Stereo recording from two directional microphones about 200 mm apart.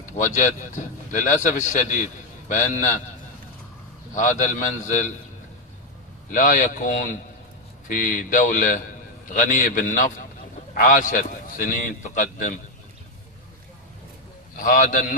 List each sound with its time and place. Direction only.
0.2 s a man's voice: 40° left (ahead or behind)
4.1 s a man's voice: 40° left (ahead or behind)
6.3 s a man's voice: 40° left (ahead or behind)
14.6 s a man's voice: 45° left (ahead or behind)